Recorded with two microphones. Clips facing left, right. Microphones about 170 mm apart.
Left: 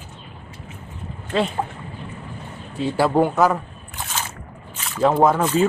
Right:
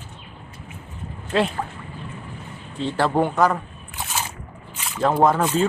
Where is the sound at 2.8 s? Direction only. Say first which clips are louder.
Left 3 dB; 10° left (ahead or behind).